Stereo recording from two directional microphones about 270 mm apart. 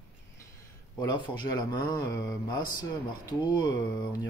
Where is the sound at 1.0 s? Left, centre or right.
Centre.